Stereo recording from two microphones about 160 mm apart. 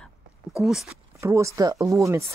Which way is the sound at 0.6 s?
Centre (ahead or behind).